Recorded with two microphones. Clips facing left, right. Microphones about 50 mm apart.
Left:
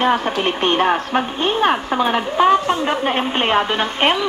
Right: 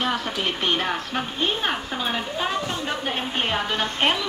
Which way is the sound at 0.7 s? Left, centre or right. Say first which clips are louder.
Left 10 dB; left.